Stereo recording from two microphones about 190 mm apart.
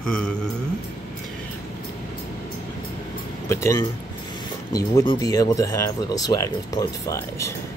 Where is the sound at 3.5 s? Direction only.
15° left (ahead or behind).